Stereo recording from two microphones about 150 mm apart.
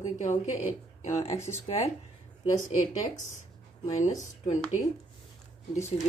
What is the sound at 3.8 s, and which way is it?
Speech, 50° left (ahead or behind).